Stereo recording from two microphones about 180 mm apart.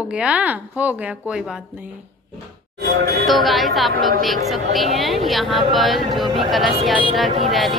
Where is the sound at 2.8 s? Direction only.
90° right.